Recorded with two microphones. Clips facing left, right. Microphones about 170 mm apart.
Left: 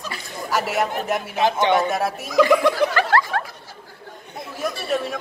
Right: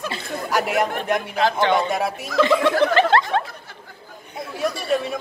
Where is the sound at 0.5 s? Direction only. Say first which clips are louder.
Right 1 dB; centre (ahead or behind).